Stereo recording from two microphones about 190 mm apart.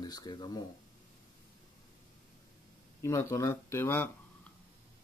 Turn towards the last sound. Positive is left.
turn(degrees=15)  # may be behind; listen again after turning